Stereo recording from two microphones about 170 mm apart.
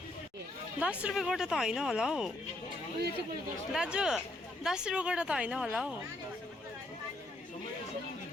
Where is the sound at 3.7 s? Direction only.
5° right (ahead or behind).